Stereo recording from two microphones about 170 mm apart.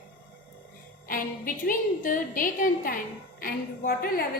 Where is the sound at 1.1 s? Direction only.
55° left (ahead or behind).